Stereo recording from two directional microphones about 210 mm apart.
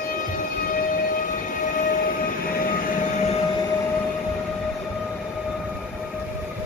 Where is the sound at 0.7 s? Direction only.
40° left (ahead or behind).